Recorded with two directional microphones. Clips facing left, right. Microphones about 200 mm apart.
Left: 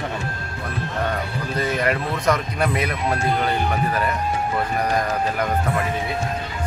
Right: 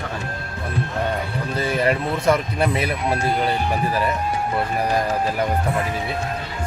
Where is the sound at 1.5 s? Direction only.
30° right (ahead or behind).